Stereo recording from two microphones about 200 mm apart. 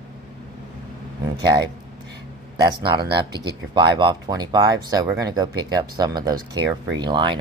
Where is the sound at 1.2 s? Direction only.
20° right (ahead or behind).